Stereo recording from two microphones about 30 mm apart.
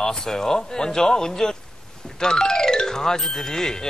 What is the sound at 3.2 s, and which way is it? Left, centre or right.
Speech, centre.